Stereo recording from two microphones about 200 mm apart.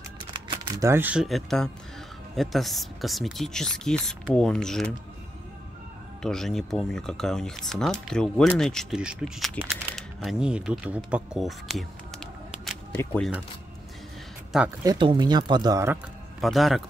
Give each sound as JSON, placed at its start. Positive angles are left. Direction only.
{"t": 0.3, "sound": "speech", "side_deg": -15}
{"t": 6.2, "sound": "speech", "side_deg": 0}
{"t": 14.8, "sound": "speech", "side_deg": -20}
{"t": 16.3, "sound": "speech", "side_deg": 0}